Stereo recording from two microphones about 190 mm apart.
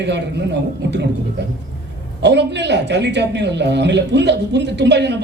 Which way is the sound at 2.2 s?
65° right (ahead or behind).